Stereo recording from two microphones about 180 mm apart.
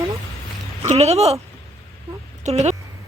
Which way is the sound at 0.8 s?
35° right (ahead or behind).